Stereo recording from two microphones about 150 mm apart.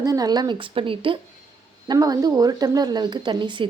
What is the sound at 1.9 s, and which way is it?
Speech, 25° right (ahead or behind).